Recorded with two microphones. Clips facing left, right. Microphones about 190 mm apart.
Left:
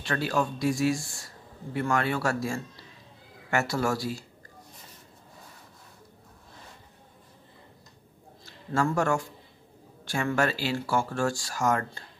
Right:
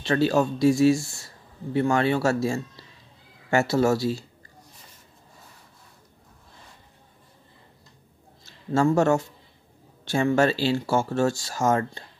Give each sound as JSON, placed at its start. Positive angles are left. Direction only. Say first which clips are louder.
{"t": 0.0, "sound": "a man's voice", "louder": "right 7 dB", "side_deg": -25}
{"t": 8.5, "sound": "speech", "louder": "right 6 dB", "side_deg": -25}